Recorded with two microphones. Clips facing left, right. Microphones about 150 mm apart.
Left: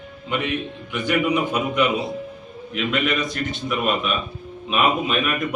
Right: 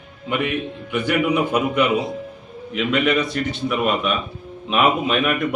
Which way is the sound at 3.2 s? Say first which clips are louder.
Right 4 dB; 30° right (ahead or behind).